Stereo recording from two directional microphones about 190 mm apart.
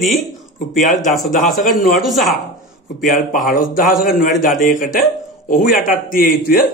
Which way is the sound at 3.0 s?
45° left (ahead or behind).